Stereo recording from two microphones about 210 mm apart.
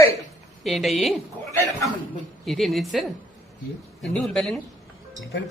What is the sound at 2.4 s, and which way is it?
Speech, centre (ahead or behind).